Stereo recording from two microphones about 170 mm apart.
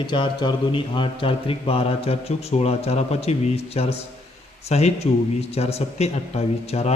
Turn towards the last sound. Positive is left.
turn(degrees=40)  # may be behind; listen again after turning